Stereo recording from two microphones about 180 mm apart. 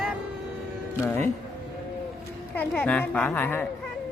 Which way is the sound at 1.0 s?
15° left (ahead or behind).